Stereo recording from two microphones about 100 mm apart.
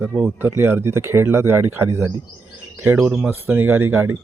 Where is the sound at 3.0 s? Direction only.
10° right (ahead or behind).